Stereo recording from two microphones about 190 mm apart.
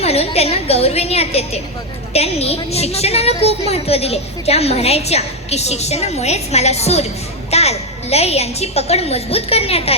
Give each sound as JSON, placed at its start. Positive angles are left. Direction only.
{"t": 0.0, "sound": "a woman's voice", "side_deg": 30}